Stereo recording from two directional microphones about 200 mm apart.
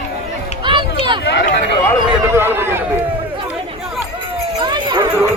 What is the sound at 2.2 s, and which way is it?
Speech, 10° right (ahead or behind).